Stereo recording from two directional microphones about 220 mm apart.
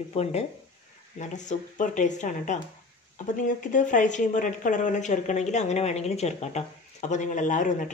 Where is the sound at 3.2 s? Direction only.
35° left (ahead or behind).